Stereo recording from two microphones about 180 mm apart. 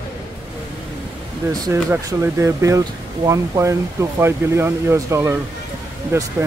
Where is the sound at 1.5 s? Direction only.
15° right (ahead or behind).